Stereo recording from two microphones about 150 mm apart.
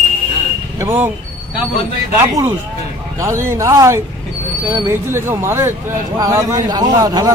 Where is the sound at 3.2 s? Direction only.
20° right (ahead or behind).